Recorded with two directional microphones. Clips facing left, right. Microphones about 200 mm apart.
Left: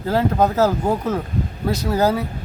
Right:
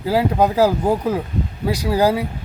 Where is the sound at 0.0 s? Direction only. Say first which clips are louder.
Right 1 dB; 10° right (ahead or behind).